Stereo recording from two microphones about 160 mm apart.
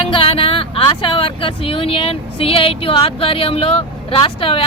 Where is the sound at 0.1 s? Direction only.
35° left (ahead or behind).